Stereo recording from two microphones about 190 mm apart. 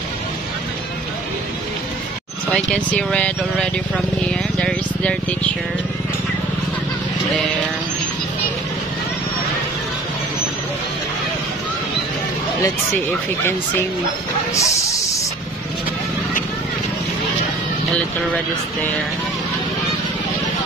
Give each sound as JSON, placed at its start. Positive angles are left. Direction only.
{"t": 2.5, "sound": "speech", "side_deg": 5}
{"t": 14.5, "sound": "snake", "side_deg": 15}